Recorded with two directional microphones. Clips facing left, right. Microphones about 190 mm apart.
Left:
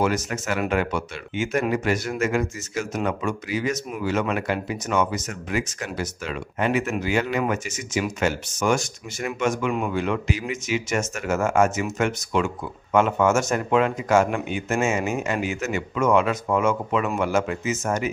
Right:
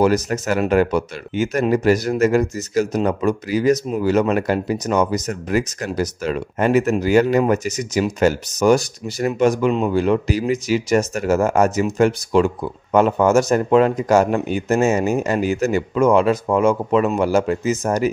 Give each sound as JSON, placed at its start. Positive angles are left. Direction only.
{"t": 0.0, "sound": "speech", "side_deg": -40}